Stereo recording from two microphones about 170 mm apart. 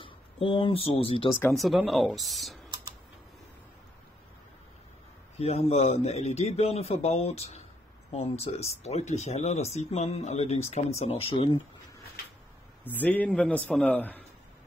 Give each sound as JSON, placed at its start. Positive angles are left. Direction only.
{"t": 0.0, "sound": "speech", "side_deg": 30}
{"t": 1.4, "sound": "speech", "side_deg": 0}
{"t": 5.4, "sound": "speech", "side_deg": 35}
{"t": 12.8, "sound": "a man's voice", "side_deg": 10}